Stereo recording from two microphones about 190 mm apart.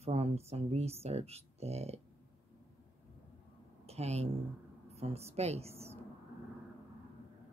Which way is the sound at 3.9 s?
35° right (ahead or behind).